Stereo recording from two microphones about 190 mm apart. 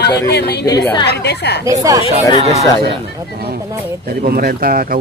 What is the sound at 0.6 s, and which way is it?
Speech, 20° left (ahead or behind).